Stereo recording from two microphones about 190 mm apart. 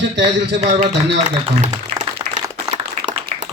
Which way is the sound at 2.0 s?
35° right (ahead or behind).